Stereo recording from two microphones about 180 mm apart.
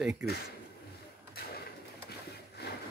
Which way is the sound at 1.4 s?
60° left (ahead or behind).